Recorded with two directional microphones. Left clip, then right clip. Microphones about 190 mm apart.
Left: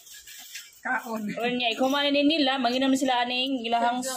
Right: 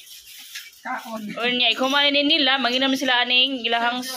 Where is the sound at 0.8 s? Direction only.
30° left (ahead or behind).